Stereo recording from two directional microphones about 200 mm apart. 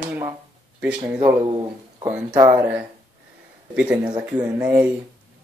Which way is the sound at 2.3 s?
15° right (ahead or behind).